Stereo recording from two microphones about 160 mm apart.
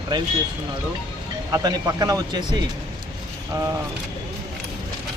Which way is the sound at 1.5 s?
25° right (ahead or behind).